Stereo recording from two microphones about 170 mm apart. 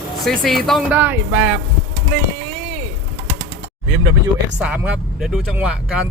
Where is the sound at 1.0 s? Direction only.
10° right (ahead or behind).